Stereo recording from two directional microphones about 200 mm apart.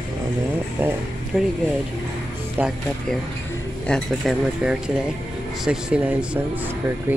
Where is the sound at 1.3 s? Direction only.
5° right (ahead or behind).